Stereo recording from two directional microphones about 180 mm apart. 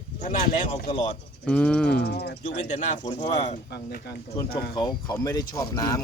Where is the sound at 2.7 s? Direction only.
40° left (ahead or behind).